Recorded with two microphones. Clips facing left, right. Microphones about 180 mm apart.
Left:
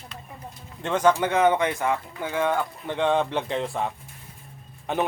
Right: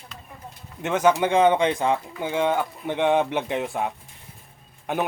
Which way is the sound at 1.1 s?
20° right (ahead or behind).